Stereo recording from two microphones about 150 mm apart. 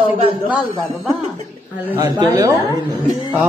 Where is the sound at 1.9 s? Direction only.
25° right (ahead or behind).